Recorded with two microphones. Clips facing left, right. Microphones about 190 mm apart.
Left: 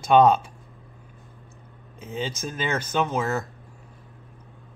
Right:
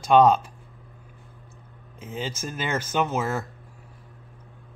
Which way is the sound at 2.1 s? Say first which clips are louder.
Left 2 dB; 10° right (ahead or behind).